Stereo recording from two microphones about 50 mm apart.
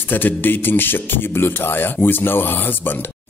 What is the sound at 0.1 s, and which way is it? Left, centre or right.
Speech, left.